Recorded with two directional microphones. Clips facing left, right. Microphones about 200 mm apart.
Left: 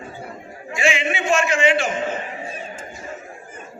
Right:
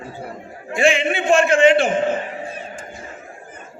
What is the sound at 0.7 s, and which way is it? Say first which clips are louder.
A man's voice: right 4 dB; 55° right (ahead or behind).